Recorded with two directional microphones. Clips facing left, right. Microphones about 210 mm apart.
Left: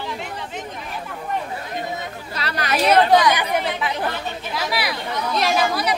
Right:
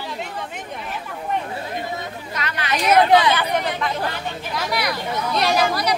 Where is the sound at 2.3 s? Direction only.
35° left (ahead or behind).